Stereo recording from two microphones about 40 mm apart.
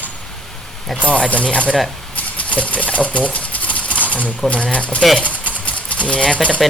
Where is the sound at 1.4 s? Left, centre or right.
Left.